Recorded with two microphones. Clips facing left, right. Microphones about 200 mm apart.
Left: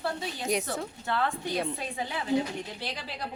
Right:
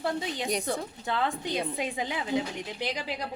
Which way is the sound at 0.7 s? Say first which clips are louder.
Right 1 dB; 15° right (ahead or behind).